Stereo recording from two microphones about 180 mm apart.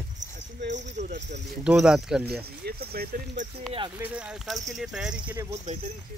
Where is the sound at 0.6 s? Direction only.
75° right (ahead or behind).